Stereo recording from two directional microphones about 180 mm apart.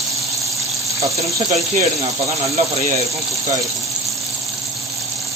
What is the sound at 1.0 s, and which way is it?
Speech, 15° right (ahead or behind).